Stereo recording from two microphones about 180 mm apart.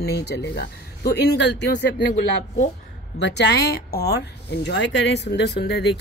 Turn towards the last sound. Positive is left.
turn(degrees=70)  # may be behind; listen again after turning